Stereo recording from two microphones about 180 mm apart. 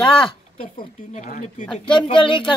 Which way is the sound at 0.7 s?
40° left (ahead or behind).